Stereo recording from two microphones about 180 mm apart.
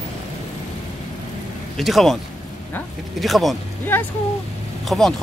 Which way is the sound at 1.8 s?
Centre (ahead or behind).